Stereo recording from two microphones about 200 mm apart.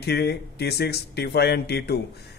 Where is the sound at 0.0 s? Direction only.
55° left (ahead or behind).